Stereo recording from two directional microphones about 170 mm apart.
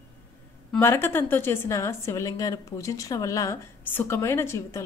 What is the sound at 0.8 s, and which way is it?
A woman's voice, 15° left (ahead or behind).